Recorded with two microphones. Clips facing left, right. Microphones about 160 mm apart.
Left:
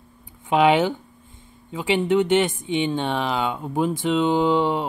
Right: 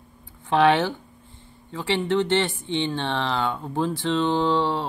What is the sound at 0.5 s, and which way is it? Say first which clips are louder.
Speech: left 2 dB; 15° left (ahead or behind).